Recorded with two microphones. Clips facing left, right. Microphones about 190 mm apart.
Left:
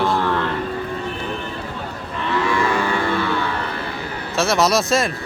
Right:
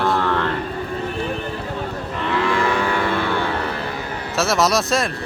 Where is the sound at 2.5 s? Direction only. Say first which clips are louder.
Even; 55° right (ahead or behind).